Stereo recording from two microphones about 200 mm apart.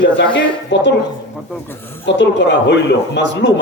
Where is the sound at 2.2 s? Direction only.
60° left (ahead or behind).